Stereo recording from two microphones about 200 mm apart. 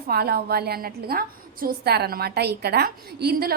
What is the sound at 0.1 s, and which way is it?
A woman's voice, 50° right (ahead or behind).